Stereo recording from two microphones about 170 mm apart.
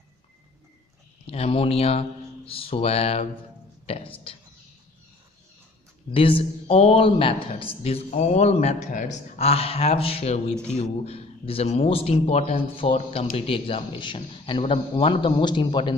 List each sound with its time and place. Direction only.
1.2 s speech: 35° left (ahead or behind)
6.1 s speech: 30° left (ahead or behind)
10.5 s speech: 5° left (ahead or behind)
10.8 s speech: 35° left (ahead or behind)